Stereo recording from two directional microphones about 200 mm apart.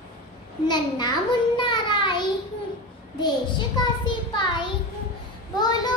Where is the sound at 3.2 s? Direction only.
20° left (ahead or behind).